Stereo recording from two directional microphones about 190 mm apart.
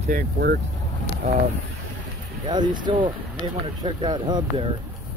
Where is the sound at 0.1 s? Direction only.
55° right (ahead or behind).